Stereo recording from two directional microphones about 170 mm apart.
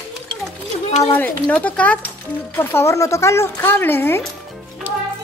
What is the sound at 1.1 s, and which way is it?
A woman's voice, 10° left (ahead or behind).